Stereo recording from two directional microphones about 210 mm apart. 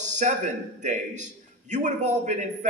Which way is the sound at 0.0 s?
35° right (ahead or behind).